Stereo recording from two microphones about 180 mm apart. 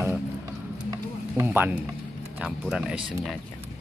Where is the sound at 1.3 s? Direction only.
10° right (ahead or behind).